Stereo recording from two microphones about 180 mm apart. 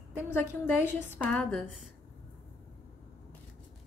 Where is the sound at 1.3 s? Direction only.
5° left (ahead or behind).